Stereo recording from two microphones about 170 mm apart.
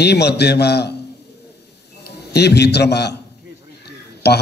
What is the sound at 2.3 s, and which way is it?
A man's voice, 75° left (ahead or behind).